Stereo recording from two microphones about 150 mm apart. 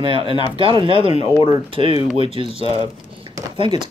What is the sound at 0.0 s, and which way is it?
Speech, 35° right (ahead or behind).